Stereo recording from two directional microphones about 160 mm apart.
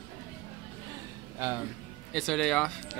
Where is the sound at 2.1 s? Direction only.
Centre (ahead or behind).